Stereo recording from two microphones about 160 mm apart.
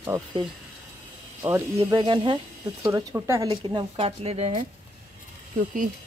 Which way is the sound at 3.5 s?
30° right (ahead or behind).